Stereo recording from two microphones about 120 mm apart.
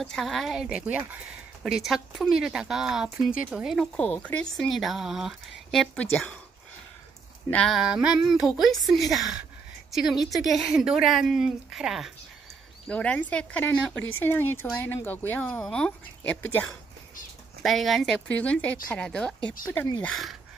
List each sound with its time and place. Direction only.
0.0 s speech: centre (ahead or behind)
1.6 s speech: centre (ahead or behind)
3.9 s speech: 10° left (ahead or behind)
5.9 s a woman's voice: 10° left (ahead or behind)
7.5 s speech: 5° left (ahead or behind)
7.8 s speech: 5° right (ahead or behind)
12.8 s a woman's voice: 10° left (ahead or behind)